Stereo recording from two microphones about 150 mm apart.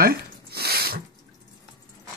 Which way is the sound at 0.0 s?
90° right.